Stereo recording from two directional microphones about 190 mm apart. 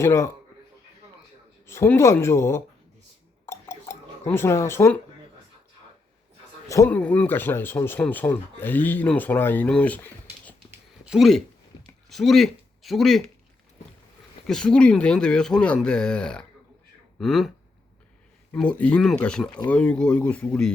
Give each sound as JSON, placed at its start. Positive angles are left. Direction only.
{"t": 0.0, "sound": "speech", "side_deg": 15}
{"t": 1.6, "sound": "speech", "side_deg": 15}
{"t": 3.4, "sound": "cutlery", "side_deg": 15}
{"t": 4.3, "sound": "speech", "side_deg": 15}
{"t": 6.7, "sound": "speech", "side_deg": 15}
{"t": 10.7, "sound": "a sound", "side_deg": -5}
{"t": 12.0, "sound": "a man's voice", "side_deg": 0}
{"t": 14.4, "sound": "speech", "side_deg": 5}
{"t": 18.5, "sound": "speech", "side_deg": 5}